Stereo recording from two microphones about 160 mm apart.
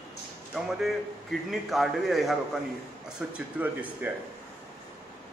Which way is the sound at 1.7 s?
Centre (ahead or behind).